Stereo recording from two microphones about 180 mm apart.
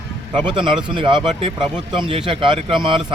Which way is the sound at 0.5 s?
25° right (ahead or behind).